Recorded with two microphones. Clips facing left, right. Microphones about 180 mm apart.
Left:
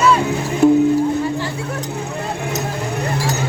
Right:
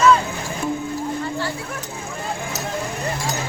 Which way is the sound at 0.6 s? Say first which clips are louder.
Left 14 dB; 65° left (ahead or behind).